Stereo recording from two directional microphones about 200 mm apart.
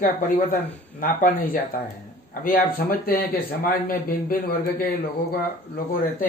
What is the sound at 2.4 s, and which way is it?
Speech, 50° left (ahead or behind).